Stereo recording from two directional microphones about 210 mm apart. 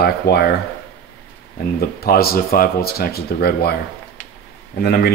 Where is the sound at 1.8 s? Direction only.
45° left (ahead or behind).